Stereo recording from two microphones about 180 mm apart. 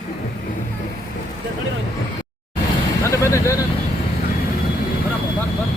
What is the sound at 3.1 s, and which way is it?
Speech, 15° left (ahead or behind).